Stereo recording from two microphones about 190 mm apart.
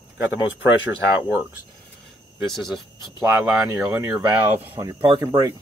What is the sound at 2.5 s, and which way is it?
Speech, centre (ahead or behind).